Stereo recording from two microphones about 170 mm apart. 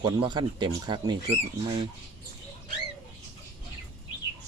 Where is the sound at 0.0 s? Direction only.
25° right (ahead or behind).